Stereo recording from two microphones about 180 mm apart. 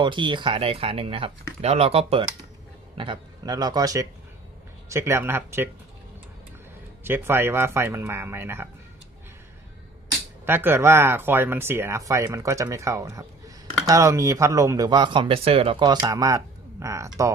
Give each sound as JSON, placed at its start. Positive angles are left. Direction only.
{"t": 0.0, "sound": "speech", "side_deg": -25}
{"t": 7.0, "sound": "speech", "side_deg": -10}
{"t": 10.4, "sound": "speech", "side_deg": -10}